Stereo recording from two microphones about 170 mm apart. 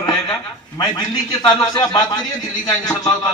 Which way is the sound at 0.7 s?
25° left (ahead or behind).